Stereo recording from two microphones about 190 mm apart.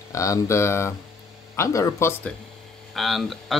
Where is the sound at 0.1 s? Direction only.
15° left (ahead or behind).